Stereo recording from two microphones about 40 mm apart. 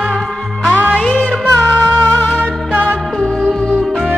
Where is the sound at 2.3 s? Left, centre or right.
Right.